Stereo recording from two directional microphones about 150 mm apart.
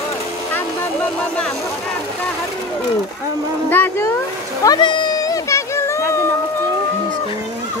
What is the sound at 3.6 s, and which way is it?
Boat, 15° left (ahead or behind).